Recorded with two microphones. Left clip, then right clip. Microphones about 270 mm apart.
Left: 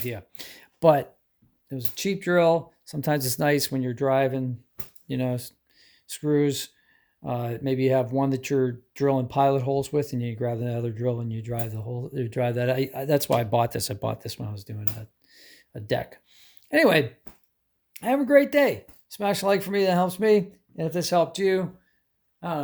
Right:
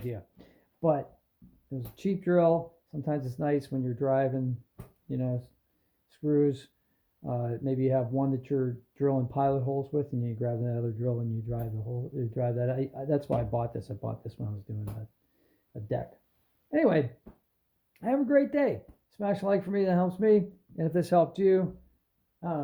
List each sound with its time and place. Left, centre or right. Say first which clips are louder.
0.1 s a sound: left 6 dB; left
0.8 s speech: left 9 dB; left
1.7 s speech: left 5 dB; centre
15.7 s speech: left 6 dB; left
20.8 s speech: left 2 dB; centre
22.4 s speech: left 4 dB; left